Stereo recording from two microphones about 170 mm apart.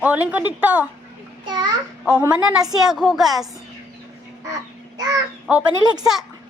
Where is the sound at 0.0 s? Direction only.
10° right (ahead or behind).